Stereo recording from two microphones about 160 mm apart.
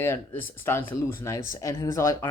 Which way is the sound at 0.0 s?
15° left (ahead or behind).